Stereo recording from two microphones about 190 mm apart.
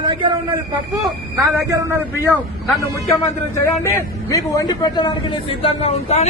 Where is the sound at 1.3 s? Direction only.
15° right (ahead or behind).